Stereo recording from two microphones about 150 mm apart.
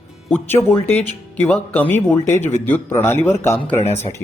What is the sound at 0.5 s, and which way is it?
Speech, 15° left (ahead or behind).